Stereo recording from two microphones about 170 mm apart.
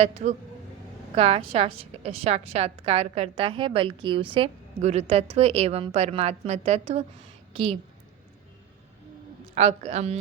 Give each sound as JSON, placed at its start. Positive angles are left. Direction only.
{"t": 0.0, "sound": "a woman's voice", "side_deg": -35}
{"t": 9.6, "sound": "a woman's voice", "side_deg": -40}